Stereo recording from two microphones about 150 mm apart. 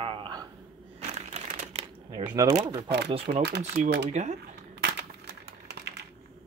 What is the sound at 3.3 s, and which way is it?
Speech, 70° right (ahead or behind).